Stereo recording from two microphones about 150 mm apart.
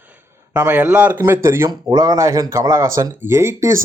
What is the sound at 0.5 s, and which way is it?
A man's voice, 10° right (ahead or behind).